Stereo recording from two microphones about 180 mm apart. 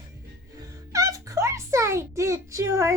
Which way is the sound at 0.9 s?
20° right (ahead or behind).